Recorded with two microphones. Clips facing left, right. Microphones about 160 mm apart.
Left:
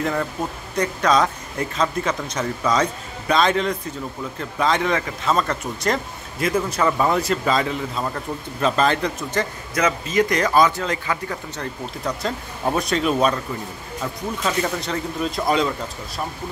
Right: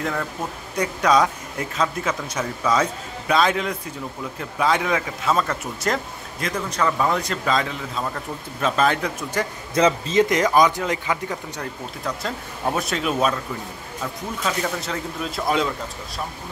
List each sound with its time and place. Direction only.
0.0 s speech: 5° left (ahead or behind)
0.7 s speech: 10° right (ahead or behind)
6.4 s speech: 5° left (ahead or behind)
9.8 s speech: 30° right (ahead or behind)
12.0 s speech: centre (ahead or behind)
14.4 s speech: centre (ahead or behind)